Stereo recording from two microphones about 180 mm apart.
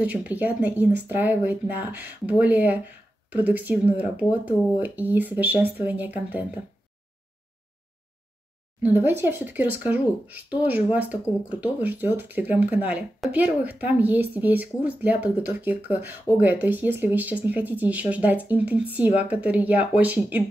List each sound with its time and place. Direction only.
0.0 s speech: 10° right (ahead or behind)
8.8 s speech: 10° right (ahead or behind)